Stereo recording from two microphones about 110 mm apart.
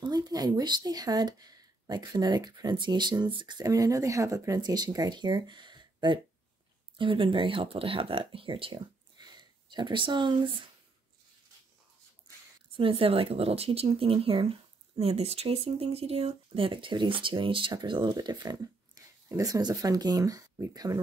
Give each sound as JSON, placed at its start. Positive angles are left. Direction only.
{"t": 0.0, "sound": "speech", "side_deg": -35}
{"t": 4.6, "sound": "speech", "side_deg": -40}
{"t": 9.2, "sound": "speech", "side_deg": -40}
{"t": 12.7, "sound": "speech", "side_deg": -55}